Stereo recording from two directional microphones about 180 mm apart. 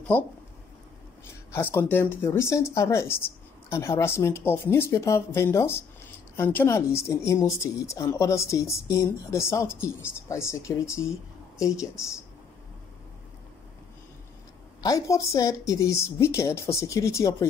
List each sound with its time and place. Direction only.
0.1 s a woman's voice: 10° left (ahead or behind)
1.5 s a woman's voice: 10° left (ahead or behind)
14.8 s a woman's voice: 20° left (ahead or behind)